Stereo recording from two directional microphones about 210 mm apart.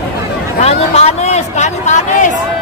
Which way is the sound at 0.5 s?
30° left (ahead or behind).